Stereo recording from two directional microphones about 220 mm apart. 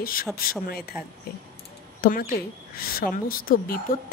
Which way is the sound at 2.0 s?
40° left (ahead or behind).